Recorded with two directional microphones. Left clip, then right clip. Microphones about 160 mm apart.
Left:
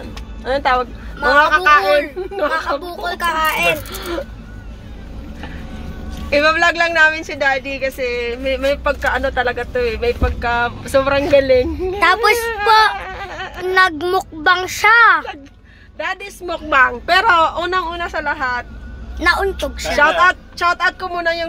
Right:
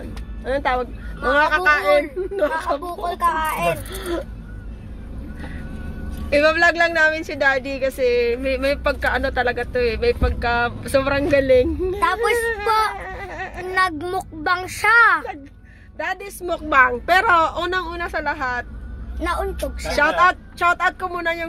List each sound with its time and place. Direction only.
0.4 s speech: 5° right (ahead or behind)
3.3 s speech: 45° left (ahead or behind)
3.9 s a woman's voice: 20° right (ahead or behind)
6.3 s a woman's voice: 15° right (ahead or behind)
12.0 s speech: 15° left (ahead or behind)
12.4 s speech: 20° right (ahead or behind)
12.6 s speech: 5° left (ahead or behind)
13.0 s a sound: 20° right (ahead or behind)
13.7 s speech: 15° left (ahead or behind)
16.0 s a woman's voice: 25° right (ahead or behind)
20.0 s a woman's voice: 20° right (ahead or behind)